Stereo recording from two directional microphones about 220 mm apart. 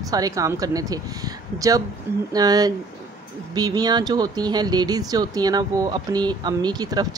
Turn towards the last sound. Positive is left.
turn(degrees=-20)  # may be behind; listen again after turning